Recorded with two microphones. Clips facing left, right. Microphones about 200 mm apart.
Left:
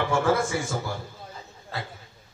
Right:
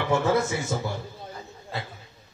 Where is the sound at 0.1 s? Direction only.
20° right (ahead or behind).